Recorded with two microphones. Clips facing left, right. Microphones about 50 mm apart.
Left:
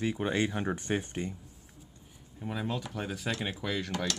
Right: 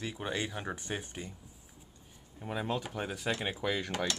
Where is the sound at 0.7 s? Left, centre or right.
Left.